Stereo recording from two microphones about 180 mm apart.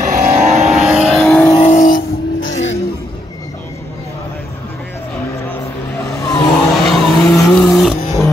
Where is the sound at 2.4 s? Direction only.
90° left.